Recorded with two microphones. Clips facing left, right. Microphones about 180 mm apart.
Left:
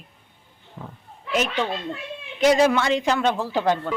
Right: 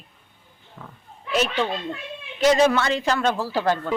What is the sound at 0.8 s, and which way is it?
Speech, 30° left (ahead or behind).